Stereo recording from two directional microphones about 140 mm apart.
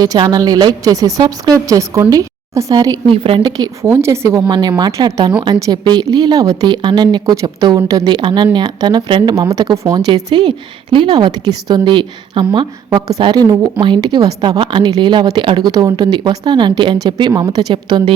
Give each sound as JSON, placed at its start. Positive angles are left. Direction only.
{"t": 0.0, "sound": "a woman's voice", "side_deg": -25}
{"t": 3.1, "sound": "a woman's voice", "side_deg": -40}
{"t": 3.8, "sound": "a woman's voice", "side_deg": -20}